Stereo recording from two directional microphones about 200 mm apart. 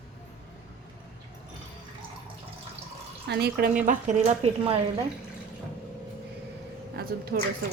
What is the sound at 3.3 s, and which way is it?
Speech, 55° right (ahead or behind).